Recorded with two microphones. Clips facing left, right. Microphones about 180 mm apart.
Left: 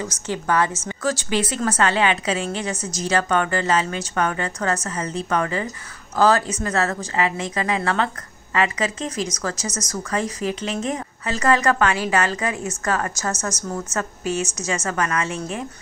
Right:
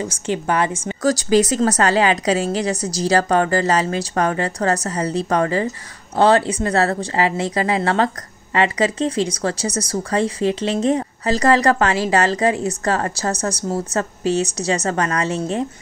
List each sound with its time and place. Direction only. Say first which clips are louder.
0.0 s a woman's voice: right 4 dB; 15° right (ahead or behind)
1.0 s speech: right 7 dB; 40° right (ahead or behind)